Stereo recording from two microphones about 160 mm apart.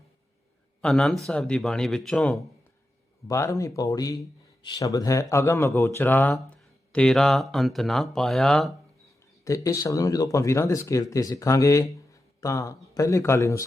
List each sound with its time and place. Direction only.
0.8 s speech: 5° left (ahead or behind)
3.2 s speech: 20° left (ahead or behind); by 8.7 s 5° left (ahead or behind)
9.4 s speech: 20° left (ahead or behind)